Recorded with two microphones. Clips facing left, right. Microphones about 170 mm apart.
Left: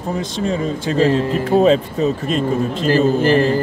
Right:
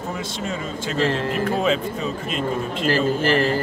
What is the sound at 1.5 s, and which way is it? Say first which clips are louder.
Speech: left 11 dB; 35° left (ahead or behind).